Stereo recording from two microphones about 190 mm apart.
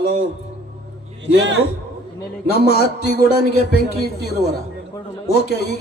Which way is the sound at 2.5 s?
55° left (ahead or behind).